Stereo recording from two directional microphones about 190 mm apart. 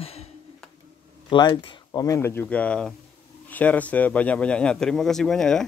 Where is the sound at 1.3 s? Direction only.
25° left (ahead or behind).